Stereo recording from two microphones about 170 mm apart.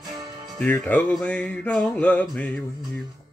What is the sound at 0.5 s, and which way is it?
Speech, 10° left (ahead or behind).